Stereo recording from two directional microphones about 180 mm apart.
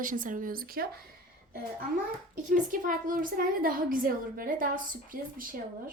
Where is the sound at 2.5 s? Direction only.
50° right (ahead or behind).